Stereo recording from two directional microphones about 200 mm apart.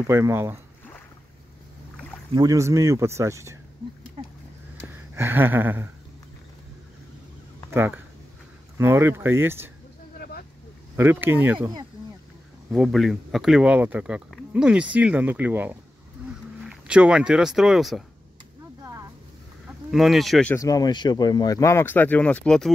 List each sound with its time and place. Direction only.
0.0 s speech: 10° right (ahead or behind)
2.3 s speech: 15° right (ahead or behind)
4.8 s a sound: 10° right (ahead or behind)
7.7 s speech: 10° right (ahead or behind)
10.1 s vehicle: 50° left (ahead or behind)
11.0 s speech: 10° right (ahead or behind)
12.7 s speech: centre (ahead or behind)
19.9 s speech: centre (ahead or behind)
20.5 s speech: 15° left (ahead or behind)